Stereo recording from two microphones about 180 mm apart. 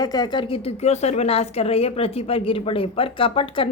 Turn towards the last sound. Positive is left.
turn(degrees=30)  # may be behind; listen again after turning